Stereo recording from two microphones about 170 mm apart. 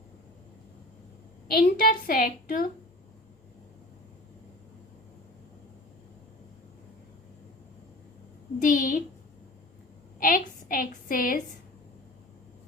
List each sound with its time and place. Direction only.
1.5 s a woman's voice: 60° left (ahead or behind)
8.6 s a woman's voice: 50° left (ahead or behind)
10.2 s a woman's voice: 55° left (ahead or behind)